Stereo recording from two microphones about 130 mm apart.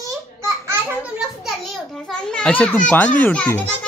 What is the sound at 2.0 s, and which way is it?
A child's voice, 5° left (ahead or behind).